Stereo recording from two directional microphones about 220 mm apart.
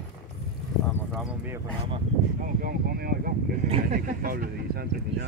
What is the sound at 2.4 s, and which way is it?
Speech, 40° right (ahead or behind).